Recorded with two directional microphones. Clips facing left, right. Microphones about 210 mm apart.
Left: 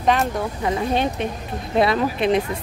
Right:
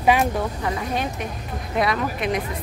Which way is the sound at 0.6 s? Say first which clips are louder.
Left 4 dB; 25° left (ahead or behind).